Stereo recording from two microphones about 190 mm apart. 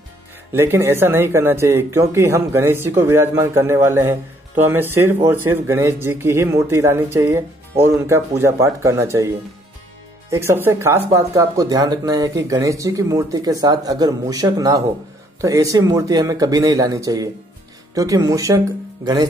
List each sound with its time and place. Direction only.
0.5 s speech: 10° right (ahead or behind)
10.3 s speech: 15° right (ahead or behind)